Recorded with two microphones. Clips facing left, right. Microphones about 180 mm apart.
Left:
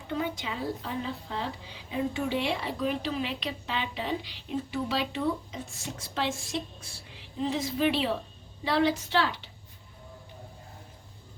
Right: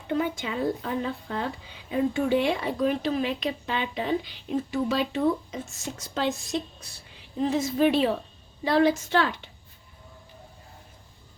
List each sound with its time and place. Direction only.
0.1 s a woman's voice: 55° right (ahead or behind)